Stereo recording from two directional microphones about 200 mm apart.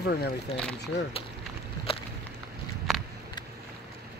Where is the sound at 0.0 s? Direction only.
55° left (ahead or behind).